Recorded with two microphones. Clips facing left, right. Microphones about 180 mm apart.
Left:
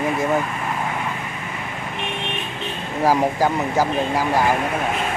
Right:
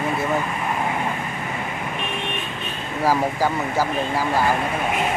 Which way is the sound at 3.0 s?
15° left (ahead or behind).